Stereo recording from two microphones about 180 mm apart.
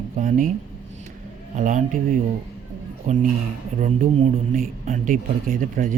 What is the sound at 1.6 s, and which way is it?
A man's voice, 45° right (ahead or behind).